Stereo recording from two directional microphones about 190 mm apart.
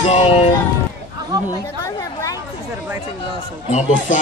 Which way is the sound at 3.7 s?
40° left (ahead or behind).